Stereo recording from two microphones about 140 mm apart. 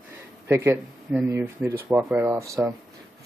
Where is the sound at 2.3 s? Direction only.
20° right (ahead or behind).